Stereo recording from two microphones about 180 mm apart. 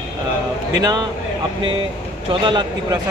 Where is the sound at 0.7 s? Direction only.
20° right (ahead or behind).